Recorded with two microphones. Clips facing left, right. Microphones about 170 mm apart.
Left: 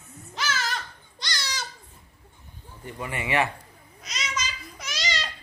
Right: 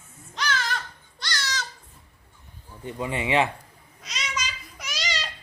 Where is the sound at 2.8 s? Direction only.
20° right (ahead or behind).